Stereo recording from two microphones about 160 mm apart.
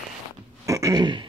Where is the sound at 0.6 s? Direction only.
20° right (ahead or behind).